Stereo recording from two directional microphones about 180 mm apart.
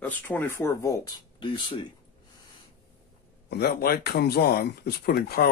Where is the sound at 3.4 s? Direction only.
60° left (ahead or behind).